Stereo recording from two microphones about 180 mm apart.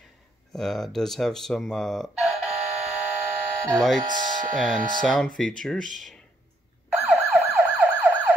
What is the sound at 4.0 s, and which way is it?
Speech, 45° right (ahead or behind).